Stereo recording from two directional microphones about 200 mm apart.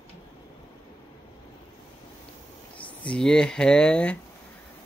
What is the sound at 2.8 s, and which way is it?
Speech, 5° left (ahead or behind).